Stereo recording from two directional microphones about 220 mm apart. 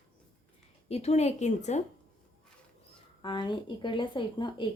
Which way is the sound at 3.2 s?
20° left (ahead or behind).